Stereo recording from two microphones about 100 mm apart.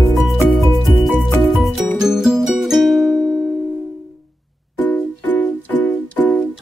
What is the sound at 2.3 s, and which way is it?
Music, 5° right (ahead or behind).